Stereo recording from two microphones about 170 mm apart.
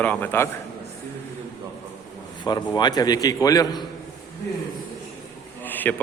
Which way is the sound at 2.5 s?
25° left (ahead or behind).